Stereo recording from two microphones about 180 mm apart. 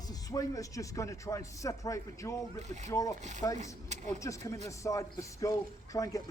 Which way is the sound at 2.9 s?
20° left (ahead or behind).